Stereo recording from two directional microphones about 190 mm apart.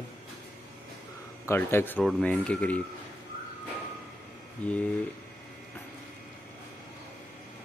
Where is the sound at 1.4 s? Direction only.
10° left (ahead or behind).